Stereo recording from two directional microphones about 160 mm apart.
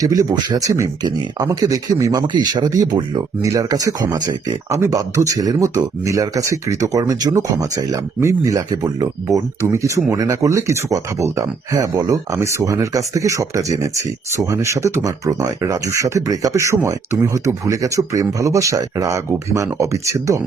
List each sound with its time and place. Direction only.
0.0 s speech: 25° right (ahead or behind)